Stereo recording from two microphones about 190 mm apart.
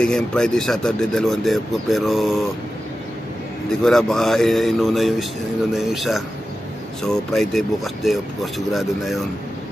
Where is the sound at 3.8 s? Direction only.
Centre (ahead or behind).